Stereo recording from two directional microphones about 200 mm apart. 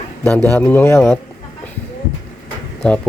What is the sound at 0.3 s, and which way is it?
Speech, 10° left (ahead or behind).